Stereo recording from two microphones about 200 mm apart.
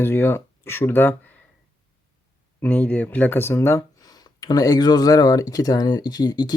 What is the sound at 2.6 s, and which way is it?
Speech, 10° left (ahead or behind).